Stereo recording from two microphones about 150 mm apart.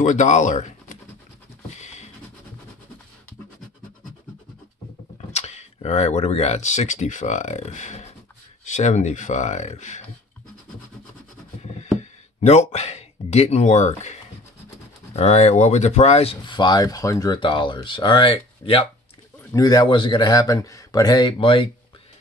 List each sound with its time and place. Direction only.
0.0 s speech: 55° left (ahead or behind)
1.8 s a sound: 50° left (ahead or behind)
5.3 s speech: 45° left (ahead or behind)
12.0 s speech: 45° left (ahead or behind)
19.5 s speech: 25° left (ahead or behind)